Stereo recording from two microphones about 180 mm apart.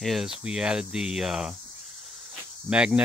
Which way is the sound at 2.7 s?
5° right (ahead or behind).